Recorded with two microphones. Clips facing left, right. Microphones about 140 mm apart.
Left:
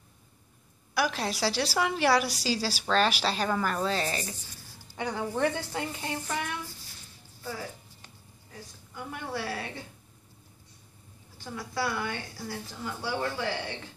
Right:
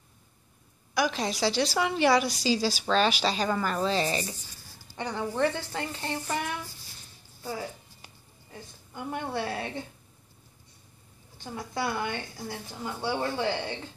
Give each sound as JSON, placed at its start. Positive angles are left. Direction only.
{"t": 0.9, "sound": "a woman's voice", "side_deg": 5}
{"t": 4.9, "sound": "a woman's voice", "side_deg": 10}
{"t": 8.9, "sound": "a woman's voice", "side_deg": -25}
{"t": 11.3, "sound": "a woman's voice", "side_deg": -20}